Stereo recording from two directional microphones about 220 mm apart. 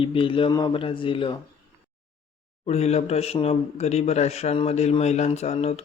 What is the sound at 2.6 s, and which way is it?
Speech, 30° left (ahead or behind).